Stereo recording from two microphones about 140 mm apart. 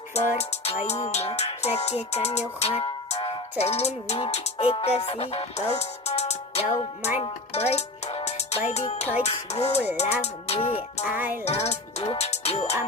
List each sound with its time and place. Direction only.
0.1 s music: 50° left (ahead or behind)
3.2 s music: 35° left (ahead or behind)
3.6 s music: 50° left (ahead or behind)
7.2 s speech: 50° left (ahead or behind)
9.2 s music: 45° left (ahead or behind)
11.1 s music: 15° right (ahead or behind)
11.4 s music: 50° left (ahead or behind)